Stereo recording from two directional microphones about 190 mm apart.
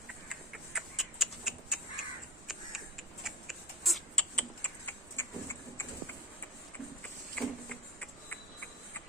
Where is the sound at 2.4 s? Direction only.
Centre (ahead or behind).